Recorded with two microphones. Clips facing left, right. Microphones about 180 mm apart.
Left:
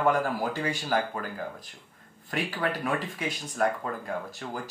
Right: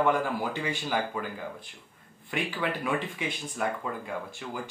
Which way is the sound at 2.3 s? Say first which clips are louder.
Left 1 dB; 45° left (ahead or behind).